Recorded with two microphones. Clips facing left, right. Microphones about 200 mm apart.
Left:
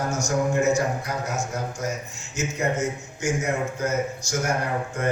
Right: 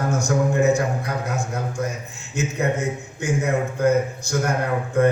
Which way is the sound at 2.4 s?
60° right (ahead or behind).